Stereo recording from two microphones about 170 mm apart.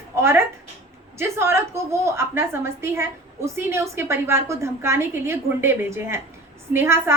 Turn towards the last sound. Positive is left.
turn(degrees=-15)  # may be behind; listen again after turning